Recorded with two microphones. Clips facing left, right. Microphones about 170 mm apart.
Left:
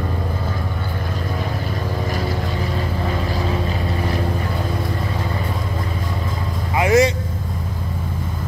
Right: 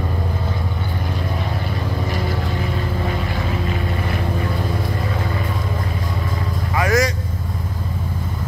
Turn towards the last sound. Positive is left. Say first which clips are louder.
# left 3 dB
turn(degrees=25)  # may be behind; listen again after turning